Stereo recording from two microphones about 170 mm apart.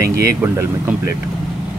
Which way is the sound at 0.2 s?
15° right (ahead or behind).